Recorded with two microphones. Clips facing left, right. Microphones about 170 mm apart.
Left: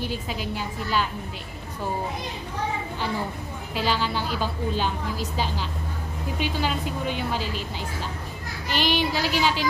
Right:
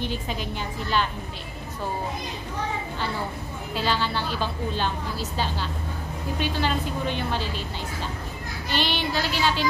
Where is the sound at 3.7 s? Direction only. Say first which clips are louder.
Even; 10° left (ahead or behind).